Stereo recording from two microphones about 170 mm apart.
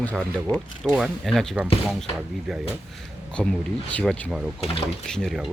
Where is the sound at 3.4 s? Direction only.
5° left (ahead or behind).